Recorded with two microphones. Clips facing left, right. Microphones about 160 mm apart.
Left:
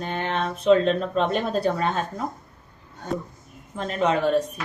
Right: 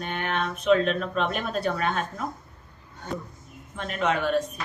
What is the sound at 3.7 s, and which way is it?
Speech, 35° left (ahead or behind).